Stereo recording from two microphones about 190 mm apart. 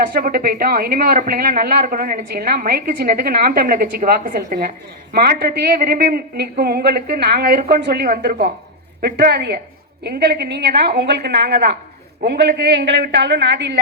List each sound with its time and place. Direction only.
0.1 s a woman's voice: 50° right (ahead or behind)